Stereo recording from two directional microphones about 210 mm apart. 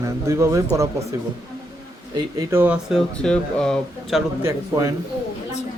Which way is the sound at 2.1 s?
15° right (ahead or behind).